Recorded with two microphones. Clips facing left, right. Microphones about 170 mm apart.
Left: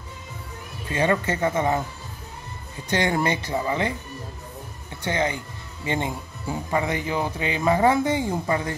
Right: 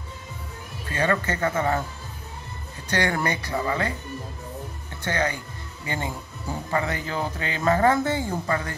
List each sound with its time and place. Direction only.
0.8 s speech: 20° left (ahead or behind)
2.9 s speech: 20° left (ahead or behind)
5.0 s speech: 20° left (ahead or behind)